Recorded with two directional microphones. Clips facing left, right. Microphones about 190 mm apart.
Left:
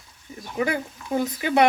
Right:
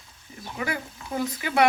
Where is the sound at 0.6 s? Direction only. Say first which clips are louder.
Left 6 dB; 25° left (ahead or behind).